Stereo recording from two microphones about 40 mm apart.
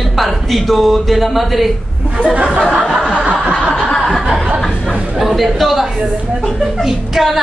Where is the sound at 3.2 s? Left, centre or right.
Right.